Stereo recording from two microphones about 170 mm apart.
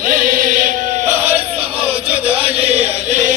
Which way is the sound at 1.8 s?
35° right (ahead or behind).